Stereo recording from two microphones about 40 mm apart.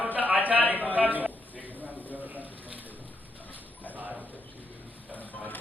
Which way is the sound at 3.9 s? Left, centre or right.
Right.